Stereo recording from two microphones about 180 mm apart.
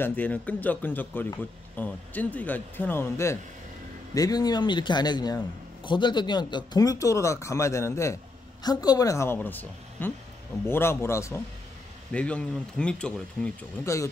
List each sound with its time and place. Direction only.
0.0 s a man's voice: 10° left (ahead or behind)